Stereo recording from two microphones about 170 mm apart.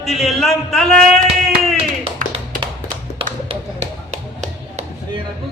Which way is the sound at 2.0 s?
35° right (ahead or behind).